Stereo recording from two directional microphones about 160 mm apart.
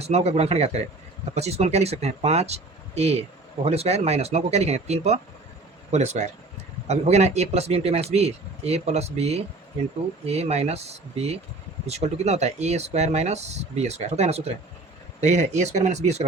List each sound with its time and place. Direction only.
0.0 s speech: 40° right (ahead or behind)